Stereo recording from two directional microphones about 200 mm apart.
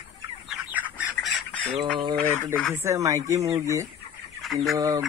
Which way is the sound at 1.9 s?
20° right (ahead or behind).